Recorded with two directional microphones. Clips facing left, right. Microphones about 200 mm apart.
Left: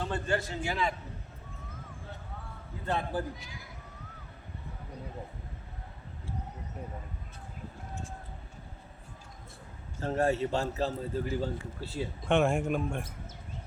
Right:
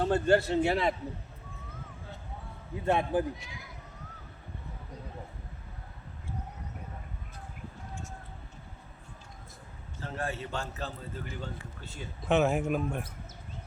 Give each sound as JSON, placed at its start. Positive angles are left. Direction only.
{"t": 0.0, "sound": "a man's voice", "side_deg": -40}
{"t": 2.8, "sound": "a man's voice", "side_deg": -20}
{"t": 10.0, "sound": "a man's voice", "side_deg": 40}
{"t": 12.2, "sound": "a man's voice", "side_deg": -5}